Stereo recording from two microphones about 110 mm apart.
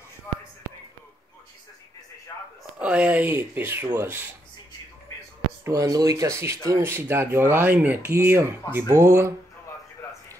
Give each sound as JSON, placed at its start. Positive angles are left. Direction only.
{"t": 2.8, "sound": "speech", "side_deg": -10}
{"t": 5.7, "sound": "speech", "side_deg": -35}